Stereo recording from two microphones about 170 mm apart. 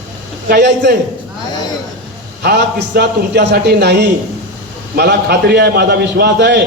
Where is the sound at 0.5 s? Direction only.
70° right (ahead or behind).